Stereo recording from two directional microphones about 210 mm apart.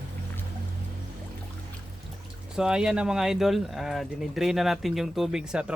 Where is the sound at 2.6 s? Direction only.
5° right (ahead or behind).